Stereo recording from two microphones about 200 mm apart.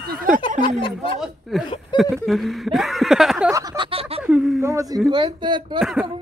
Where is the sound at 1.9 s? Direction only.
20° left (ahead or behind).